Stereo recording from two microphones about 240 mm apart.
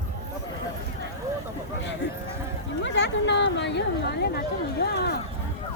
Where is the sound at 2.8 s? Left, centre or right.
Left.